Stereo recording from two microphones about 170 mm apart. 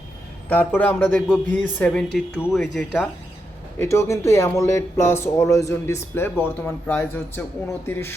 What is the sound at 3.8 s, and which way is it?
Speech, 15° left (ahead or behind).